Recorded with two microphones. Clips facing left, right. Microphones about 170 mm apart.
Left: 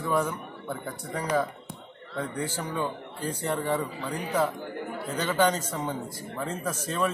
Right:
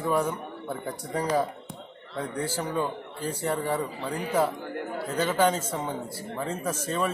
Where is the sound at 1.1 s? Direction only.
40° right (ahead or behind).